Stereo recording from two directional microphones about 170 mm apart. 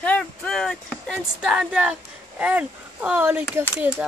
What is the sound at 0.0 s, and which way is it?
Speech, 5° left (ahead or behind).